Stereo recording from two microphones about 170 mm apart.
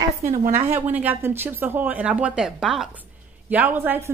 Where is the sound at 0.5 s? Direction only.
10° right (ahead or behind).